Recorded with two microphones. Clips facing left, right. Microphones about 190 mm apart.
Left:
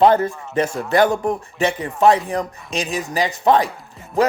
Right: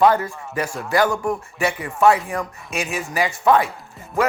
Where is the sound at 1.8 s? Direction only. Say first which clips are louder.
Left 1 dB; 35° left (ahead or behind).